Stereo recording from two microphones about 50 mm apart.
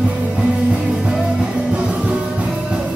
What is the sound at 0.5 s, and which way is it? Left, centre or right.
Music, centre.